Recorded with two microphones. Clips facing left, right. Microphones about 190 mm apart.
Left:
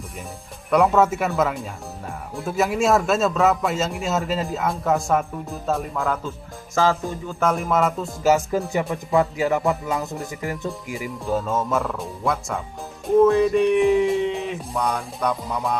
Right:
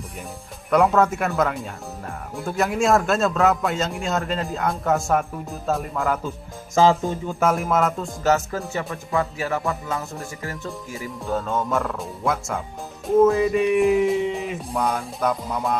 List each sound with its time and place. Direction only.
0.7 s speech: centre (ahead or behind)
6.2 s speech: 20° right (ahead or behind)
7.3 s speech: 5° right (ahead or behind); by 11.1 s 15° left (ahead or behind)
11.2 s speech: 5° left (ahead or behind)